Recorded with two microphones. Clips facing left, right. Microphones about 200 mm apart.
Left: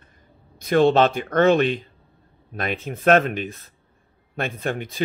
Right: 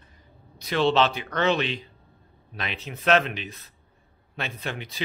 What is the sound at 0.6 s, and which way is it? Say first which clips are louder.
Speech: left 6 dB; 50° left (ahead or behind).